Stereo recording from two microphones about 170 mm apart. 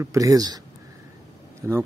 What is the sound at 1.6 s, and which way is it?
Speech, 15° right (ahead or behind).